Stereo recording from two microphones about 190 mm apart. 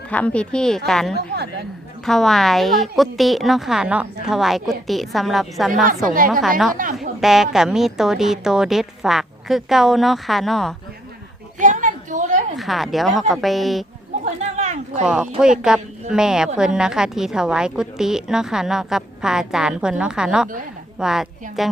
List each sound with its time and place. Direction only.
0.1 s a woman's voice: 5° left (ahead or behind)
1.1 s a woman's voice: 60° right (ahead or behind)
2.0 s a woman's voice: centre (ahead or behind)
6.1 s a woman's voice: 45° right (ahead or behind)
7.2 s a woman's voice: centre (ahead or behind)
11.6 s a sound: 40° right (ahead or behind)
12.5 s a woman's voice: centre (ahead or behind)
14.3 s a sound: 35° right (ahead or behind)
15.0 s a woman's voice: 5° right (ahead or behind)